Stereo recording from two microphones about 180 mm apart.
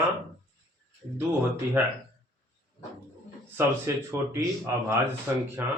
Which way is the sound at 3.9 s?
15° right (ahead or behind).